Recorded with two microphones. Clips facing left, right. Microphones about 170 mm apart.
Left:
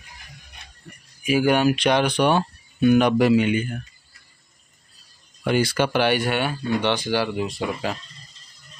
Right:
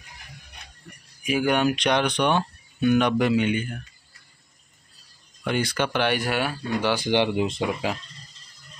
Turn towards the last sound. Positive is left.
turn(degrees=-15)  # may be behind; listen again after turning